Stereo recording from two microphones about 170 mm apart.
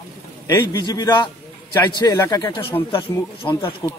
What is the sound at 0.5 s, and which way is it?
Speech, 20° left (ahead or behind).